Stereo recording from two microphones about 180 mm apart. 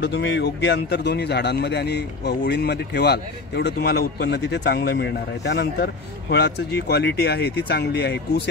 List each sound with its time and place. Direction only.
0.0 s speech: 75° left (ahead or behind)